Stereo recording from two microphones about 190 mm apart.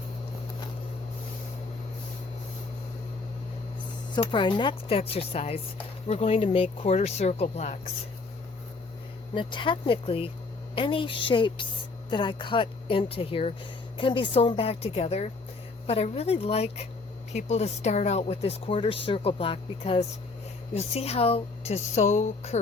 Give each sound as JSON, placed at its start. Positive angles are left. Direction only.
{"t": 4.1, "sound": "speech", "side_deg": 25}
{"t": 9.3, "sound": "speech", "side_deg": 25}